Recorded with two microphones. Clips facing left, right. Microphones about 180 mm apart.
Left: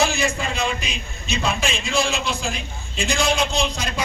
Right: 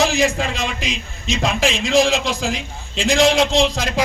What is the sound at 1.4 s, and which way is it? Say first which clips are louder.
A man's voice: right 5 dB; 90° right.